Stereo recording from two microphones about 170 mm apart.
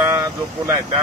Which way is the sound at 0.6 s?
20° right (ahead or behind).